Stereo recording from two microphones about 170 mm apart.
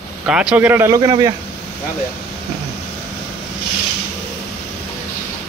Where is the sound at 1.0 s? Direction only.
25° right (ahead or behind).